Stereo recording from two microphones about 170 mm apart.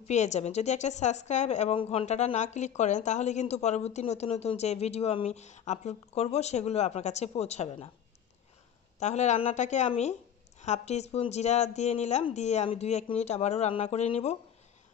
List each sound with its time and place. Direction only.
0.1 s a woman's voice: 45° left (ahead or behind)
9.0 s a woman's voice: 45° left (ahead or behind)